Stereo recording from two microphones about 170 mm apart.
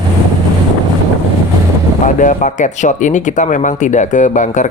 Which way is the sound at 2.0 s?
50° left (ahead or behind).